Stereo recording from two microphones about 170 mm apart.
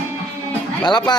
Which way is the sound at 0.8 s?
25° left (ahead or behind).